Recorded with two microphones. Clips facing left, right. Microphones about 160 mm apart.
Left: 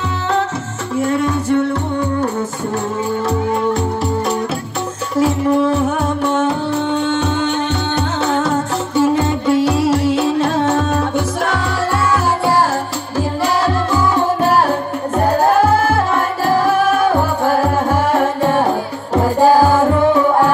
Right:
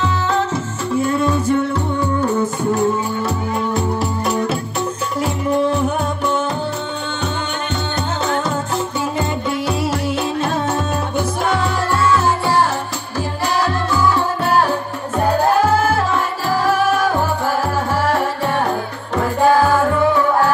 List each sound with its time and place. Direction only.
1.1 s music: 70° left (ahead or behind)
9.7 s music: centre (ahead or behind)
19.1 s music: 35° left (ahead or behind)